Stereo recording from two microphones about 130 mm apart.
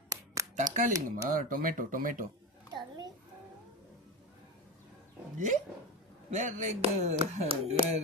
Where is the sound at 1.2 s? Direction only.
90° right.